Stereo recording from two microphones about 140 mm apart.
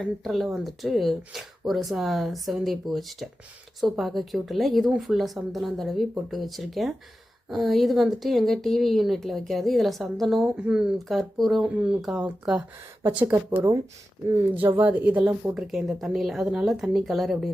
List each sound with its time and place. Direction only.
0.0 s speech: centre (ahead or behind)
13.0 s speech: 15° right (ahead or behind); by 17.3 s centre (ahead or behind)